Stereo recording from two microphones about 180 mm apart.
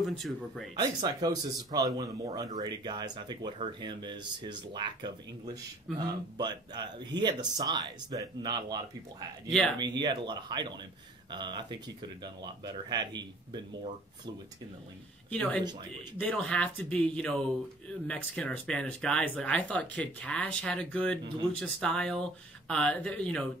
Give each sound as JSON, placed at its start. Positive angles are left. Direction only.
{"t": 0.0, "sound": "speech", "side_deg": 0}
{"t": 0.7, "sound": "speech", "side_deg": -20}
{"t": 9.8, "sound": "speech", "side_deg": -25}
{"t": 15.3, "sound": "speech", "side_deg": 5}